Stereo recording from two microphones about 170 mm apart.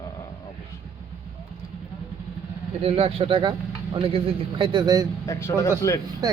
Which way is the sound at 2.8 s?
35° right (ahead or behind).